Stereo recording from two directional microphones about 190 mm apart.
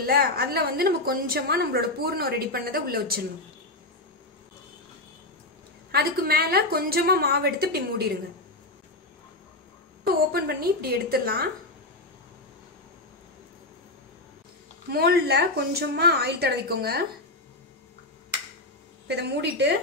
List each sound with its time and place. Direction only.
0.0 s a woman's voice: 55° right (ahead or behind)
5.9 s a woman's voice: 55° right (ahead or behind)
10.0 s a woman's voice: 55° right (ahead or behind)
14.9 s a woman's voice: 55° right (ahead or behind)
19.0 s a woman's voice: 60° right (ahead or behind)